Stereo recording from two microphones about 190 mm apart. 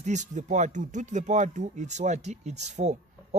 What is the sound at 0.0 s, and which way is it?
Speech, 40° right (ahead or behind).